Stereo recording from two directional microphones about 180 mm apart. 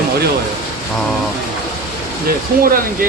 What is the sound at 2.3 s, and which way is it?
Speech, 55° right (ahead or behind).